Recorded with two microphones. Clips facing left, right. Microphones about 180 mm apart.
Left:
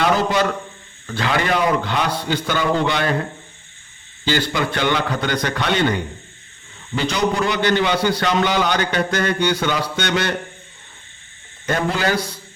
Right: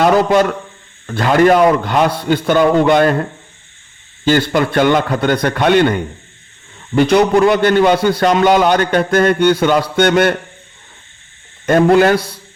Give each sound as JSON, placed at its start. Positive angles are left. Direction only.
{"t": 0.0, "sound": "a man's voice", "side_deg": -55}
{"t": 4.5, "sound": "a man's voice", "side_deg": -50}
{"t": 11.6, "sound": "a man's voice", "side_deg": -55}